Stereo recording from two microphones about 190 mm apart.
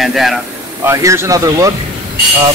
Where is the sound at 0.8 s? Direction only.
15° right (ahead or behind).